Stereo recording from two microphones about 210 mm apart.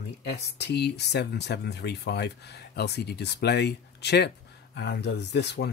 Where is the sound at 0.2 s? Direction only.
55° left (ahead or behind).